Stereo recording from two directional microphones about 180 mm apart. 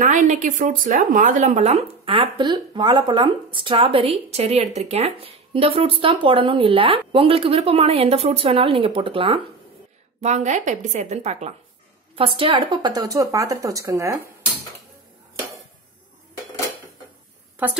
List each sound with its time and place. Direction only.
0.0 s speech: 45° right (ahead or behind); by 9.4 s 30° right (ahead or behind)
10.2 s speech: 40° right (ahead or behind)
12.2 s speech: 30° right (ahead or behind)